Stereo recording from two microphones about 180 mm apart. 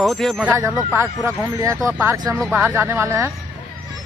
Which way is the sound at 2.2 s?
5° right (ahead or behind).